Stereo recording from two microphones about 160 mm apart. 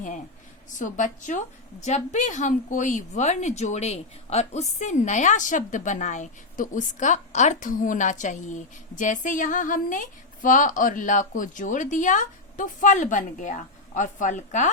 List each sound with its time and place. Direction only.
0.7 s a woman's voice: 50° left (ahead or behind)